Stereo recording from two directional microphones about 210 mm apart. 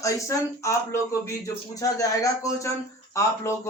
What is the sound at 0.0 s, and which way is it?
Speech, 15° left (ahead or behind).